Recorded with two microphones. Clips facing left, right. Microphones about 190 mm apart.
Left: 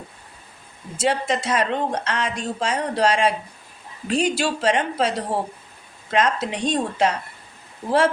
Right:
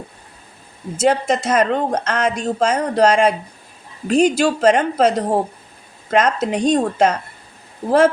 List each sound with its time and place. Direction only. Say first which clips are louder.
0.9 s speech: right 5 dB; 45° right (ahead or behind)